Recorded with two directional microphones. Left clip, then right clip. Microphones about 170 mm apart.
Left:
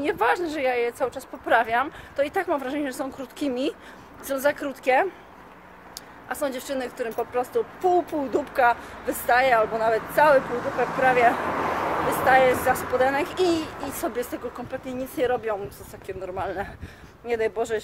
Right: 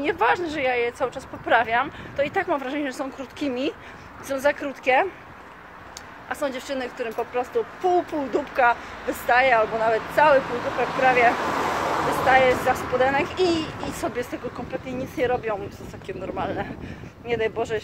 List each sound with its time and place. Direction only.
0.0 s a woman's voice: 5° left (ahead or behind)
6.2 s a woman's voice: 5° left (ahead or behind)
11.5 s a sound: 60° right (ahead or behind)
12.3 s a woman's voice: 5° left (ahead or behind)